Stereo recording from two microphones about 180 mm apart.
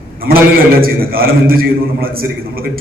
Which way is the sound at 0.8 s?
55° right (ahead or behind).